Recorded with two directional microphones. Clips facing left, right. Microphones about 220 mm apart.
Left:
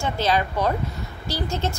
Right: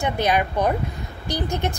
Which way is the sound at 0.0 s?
15° right (ahead or behind).